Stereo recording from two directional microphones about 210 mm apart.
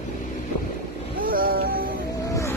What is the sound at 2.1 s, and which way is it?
Vehicle, 15° left (ahead or behind).